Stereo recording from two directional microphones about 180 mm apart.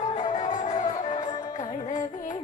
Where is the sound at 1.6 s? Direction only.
40° left (ahead or behind).